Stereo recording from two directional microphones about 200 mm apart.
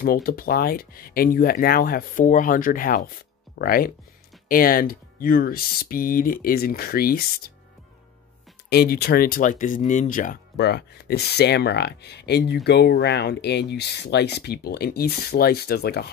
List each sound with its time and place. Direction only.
0.0 s speech: 50° left (ahead or behind)
8.6 s speech: 50° left (ahead or behind)